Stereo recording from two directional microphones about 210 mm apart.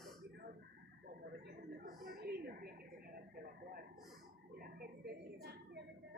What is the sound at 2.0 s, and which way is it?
Television, 45° right (ahead or behind).